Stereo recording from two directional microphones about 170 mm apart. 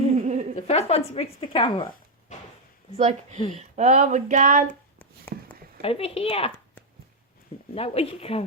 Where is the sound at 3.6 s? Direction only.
45° right (ahead or behind).